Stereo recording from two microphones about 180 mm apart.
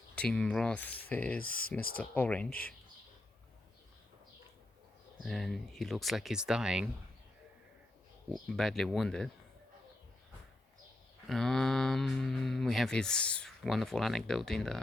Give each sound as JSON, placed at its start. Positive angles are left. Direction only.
{"t": 0.2, "sound": "speech", "side_deg": 5}
{"t": 1.4, "sound": "speech", "side_deg": 50}
{"t": 2.0, "sound": "speech", "side_deg": 10}
{"t": 5.2, "sound": "speech", "side_deg": 0}
{"t": 8.3, "sound": "speech", "side_deg": 0}
{"t": 11.3, "sound": "speech", "side_deg": 0}